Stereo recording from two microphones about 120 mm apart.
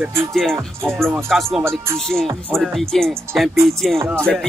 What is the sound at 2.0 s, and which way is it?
Music, 5° left (ahead or behind).